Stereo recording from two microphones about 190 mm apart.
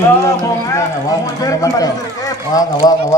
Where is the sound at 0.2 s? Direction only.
15° left (ahead or behind).